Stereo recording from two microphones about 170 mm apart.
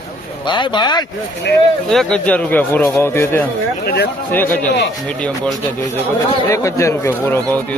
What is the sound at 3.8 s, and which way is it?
Speech, 65° left (ahead or behind).